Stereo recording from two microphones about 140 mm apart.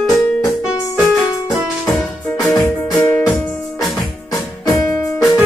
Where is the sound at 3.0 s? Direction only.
15° left (ahead or behind).